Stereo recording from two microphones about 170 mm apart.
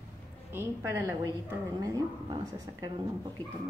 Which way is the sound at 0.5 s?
15° right (ahead or behind).